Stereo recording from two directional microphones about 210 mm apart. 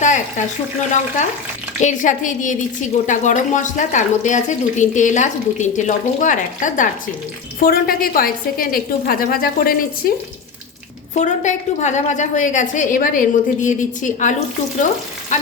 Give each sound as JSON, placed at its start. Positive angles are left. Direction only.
{"t": 0.0, "sound": "speech", "side_deg": 35}
{"t": 1.8, "sound": "a woman's voice", "side_deg": 35}
{"t": 11.1, "sound": "speech", "side_deg": 35}
{"t": 15.3, "sound": "frying", "side_deg": 35}